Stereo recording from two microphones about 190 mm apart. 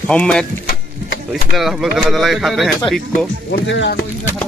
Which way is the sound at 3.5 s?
70° left (ahead or behind).